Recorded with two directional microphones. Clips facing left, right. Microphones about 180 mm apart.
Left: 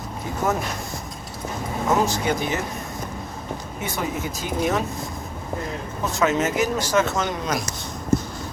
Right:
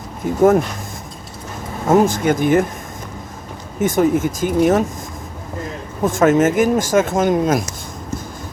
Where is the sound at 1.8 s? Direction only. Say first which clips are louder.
Right 8 dB; 50° right (ahead or behind).